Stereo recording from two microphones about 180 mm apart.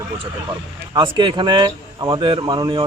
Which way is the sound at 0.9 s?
25° right (ahead or behind).